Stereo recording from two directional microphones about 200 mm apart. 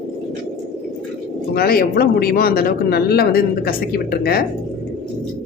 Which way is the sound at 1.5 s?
50° left (ahead or behind).